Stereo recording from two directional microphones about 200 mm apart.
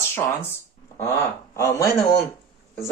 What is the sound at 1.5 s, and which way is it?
Speech, 15° left (ahead or behind).